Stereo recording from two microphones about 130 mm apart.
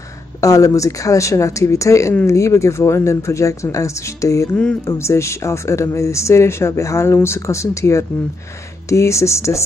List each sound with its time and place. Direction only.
0.4 s speech: 25° left (ahead or behind)